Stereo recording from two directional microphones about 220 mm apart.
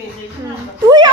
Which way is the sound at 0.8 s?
20° right (ahead or behind).